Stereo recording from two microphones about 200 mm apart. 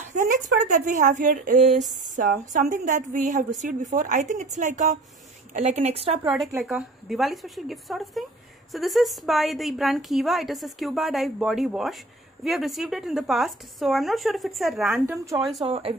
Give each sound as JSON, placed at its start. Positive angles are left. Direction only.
{"t": 0.0, "sound": "speech", "side_deg": -40}
{"t": 6.2, "sound": "a woman's voice", "side_deg": 0}
{"t": 15.0, "sound": "speech", "side_deg": -15}
{"t": 15.6, "sound": "speech", "side_deg": -30}